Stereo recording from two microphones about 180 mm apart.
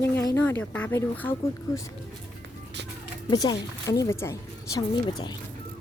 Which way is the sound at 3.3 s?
20° left (ahead or behind).